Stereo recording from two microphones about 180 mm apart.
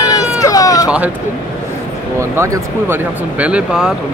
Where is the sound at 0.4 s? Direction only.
20° left (ahead or behind).